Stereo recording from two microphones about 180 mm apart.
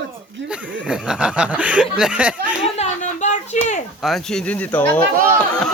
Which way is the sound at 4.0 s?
Centre (ahead or behind).